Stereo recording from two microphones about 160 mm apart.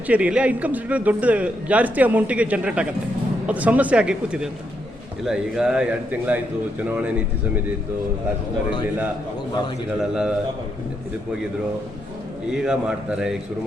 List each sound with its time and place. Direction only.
0.1 s a man's voice: 10° right (ahead or behind)
10.0 s a man's voice: 5° right (ahead or behind)
12.5 s a man's voice: 5° right (ahead or behind)